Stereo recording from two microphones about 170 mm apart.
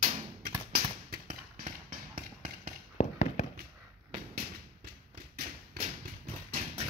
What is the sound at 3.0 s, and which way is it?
Fireworks, 35° left (ahead or behind).